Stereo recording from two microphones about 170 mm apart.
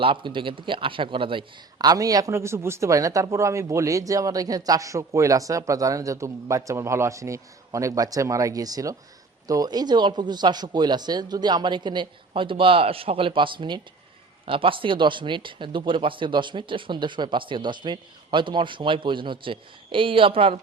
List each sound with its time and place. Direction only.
0.0 s a man's voice: 30° right (ahead or behind)